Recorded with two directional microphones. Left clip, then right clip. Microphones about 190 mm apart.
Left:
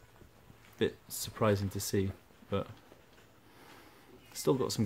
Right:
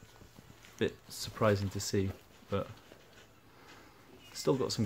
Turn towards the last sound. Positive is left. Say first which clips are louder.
# left 1 dB
turn(degrees=20)  # may be behind; listen again after turning